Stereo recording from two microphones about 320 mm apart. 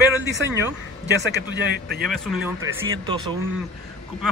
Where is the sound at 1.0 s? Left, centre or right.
Right.